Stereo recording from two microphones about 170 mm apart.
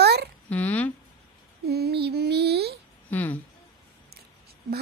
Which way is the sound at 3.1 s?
10° left (ahead or behind).